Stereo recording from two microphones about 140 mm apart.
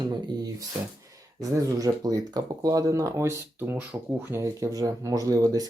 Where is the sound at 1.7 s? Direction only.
25° right (ahead or behind).